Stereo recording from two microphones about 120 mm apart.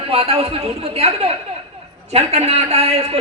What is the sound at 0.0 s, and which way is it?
A man's voice, 50° right (ahead or behind).